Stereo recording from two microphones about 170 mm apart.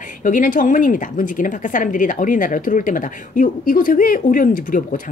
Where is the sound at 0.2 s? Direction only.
50° left (ahead or behind).